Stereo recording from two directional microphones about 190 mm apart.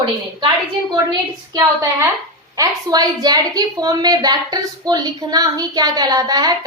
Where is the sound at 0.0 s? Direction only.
25° right (ahead or behind).